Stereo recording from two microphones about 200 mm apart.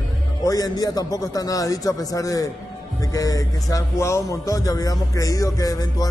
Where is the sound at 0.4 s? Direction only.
20° left (ahead or behind).